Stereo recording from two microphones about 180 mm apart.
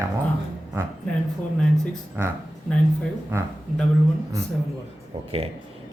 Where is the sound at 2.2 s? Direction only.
10° right (ahead or behind).